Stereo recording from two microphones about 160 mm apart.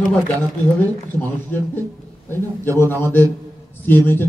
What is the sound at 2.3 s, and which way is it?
Speech, 15° left (ahead or behind).